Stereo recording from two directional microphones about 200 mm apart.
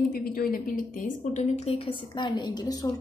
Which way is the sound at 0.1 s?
45° left (ahead or behind).